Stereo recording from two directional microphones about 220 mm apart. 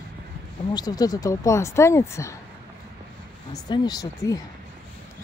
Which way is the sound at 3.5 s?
20° left (ahead or behind).